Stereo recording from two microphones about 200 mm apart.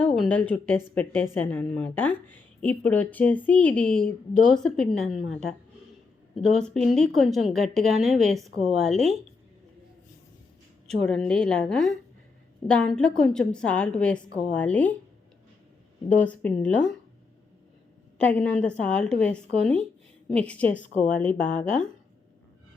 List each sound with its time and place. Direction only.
0.0 s a woman's voice: 5° left (ahead or behind)
11.0 s a woman's voice: 5° left (ahead or behind)
16.0 s a woman's voice: 10° left (ahead or behind)
18.2 s a woman's voice: 5° left (ahead or behind)
20.8 s a woman's voice: 40° left (ahead or behind)
21.2 s a woman's voice: 5° left (ahead or behind)